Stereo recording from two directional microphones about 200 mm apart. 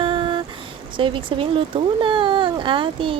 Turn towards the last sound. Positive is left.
turn(degrees=-25)  # may be behind; listen again after turning